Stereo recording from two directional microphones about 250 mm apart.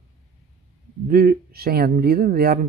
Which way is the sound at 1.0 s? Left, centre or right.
Right.